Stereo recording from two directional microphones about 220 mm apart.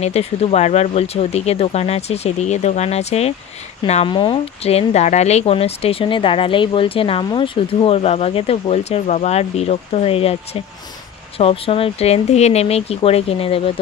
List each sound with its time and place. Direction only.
0.0 s speech: 30° left (ahead or behind)